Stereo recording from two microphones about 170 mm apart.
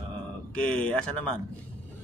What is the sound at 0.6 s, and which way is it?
Speech, 5° left (ahead or behind).